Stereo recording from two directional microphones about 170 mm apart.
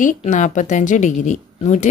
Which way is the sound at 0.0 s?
50° left (ahead or behind).